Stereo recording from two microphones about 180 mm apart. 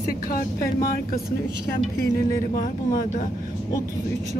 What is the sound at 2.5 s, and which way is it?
Speech, 50° left (ahead or behind).